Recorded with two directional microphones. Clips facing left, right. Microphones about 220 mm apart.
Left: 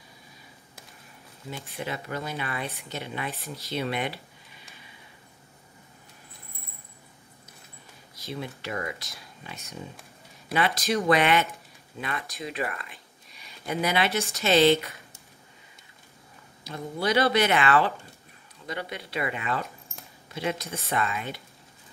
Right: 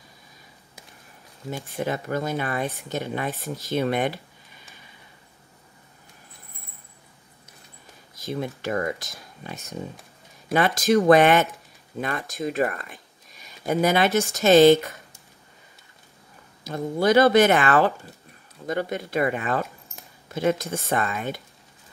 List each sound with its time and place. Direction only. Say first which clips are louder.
1.5 s speech: right 7 dB; 45° right (ahead or behind)
8.2 s speech: right 6 dB; 45° right (ahead or behind)
16.6 s speech: right 7 dB; 45° right (ahead or behind)